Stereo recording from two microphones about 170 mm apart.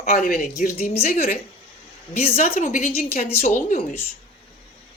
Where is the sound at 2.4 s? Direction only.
50° left (ahead or behind).